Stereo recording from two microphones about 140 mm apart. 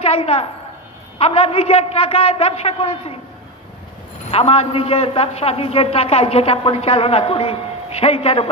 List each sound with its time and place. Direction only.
0.0 s a woman's voice: 45° left (ahead or behind)
4.3 s a man's voice: 45° left (ahead or behind)